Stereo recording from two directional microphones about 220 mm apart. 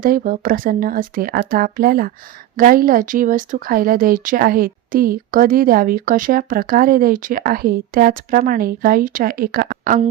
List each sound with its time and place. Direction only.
0.0 s speech: 40° right (ahead or behind)